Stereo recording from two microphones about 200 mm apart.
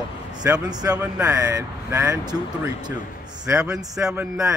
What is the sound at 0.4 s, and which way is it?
Speech, 20° right (ahead or behind).